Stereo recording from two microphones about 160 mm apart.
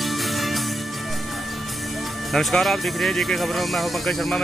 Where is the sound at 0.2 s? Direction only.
Centre (ahead or behind).